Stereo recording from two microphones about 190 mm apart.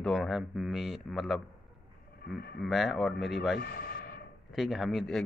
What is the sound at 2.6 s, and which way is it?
Speech, centre (ahead or behind).